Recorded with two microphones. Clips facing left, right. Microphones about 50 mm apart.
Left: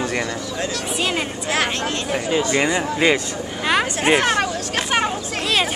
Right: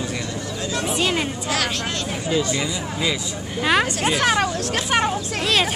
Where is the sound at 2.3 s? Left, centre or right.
Left.